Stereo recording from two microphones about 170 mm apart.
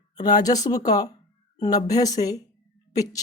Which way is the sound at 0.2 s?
25° left (ahead or behind).